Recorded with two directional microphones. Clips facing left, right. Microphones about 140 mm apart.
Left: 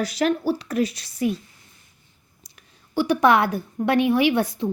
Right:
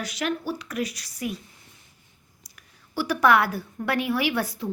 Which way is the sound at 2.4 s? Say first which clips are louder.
Left 2 dB; 25° left (ahead or behind).